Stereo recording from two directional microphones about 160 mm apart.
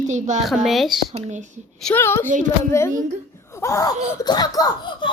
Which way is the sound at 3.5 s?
20° left (ahead or behind).